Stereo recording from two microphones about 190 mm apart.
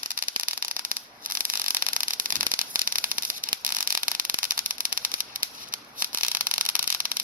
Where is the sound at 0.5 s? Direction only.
45° right (ahead or behind).